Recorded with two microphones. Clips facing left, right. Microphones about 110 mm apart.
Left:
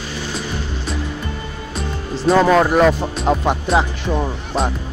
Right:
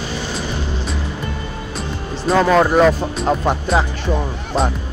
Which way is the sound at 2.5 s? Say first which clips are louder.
Right 1 dB; centre (ahead or behind).